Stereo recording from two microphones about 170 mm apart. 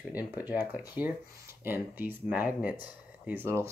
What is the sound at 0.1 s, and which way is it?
Speech, 10° right (ahead or behind).